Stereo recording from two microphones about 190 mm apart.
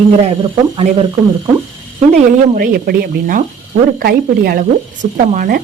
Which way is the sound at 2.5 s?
50° right (ahead or behind).